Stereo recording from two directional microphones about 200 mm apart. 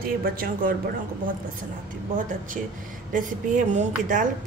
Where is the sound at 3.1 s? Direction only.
40° right (ahead or behind).